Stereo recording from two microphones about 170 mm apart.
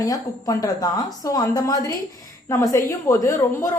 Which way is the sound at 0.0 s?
20° left (ahead or behind).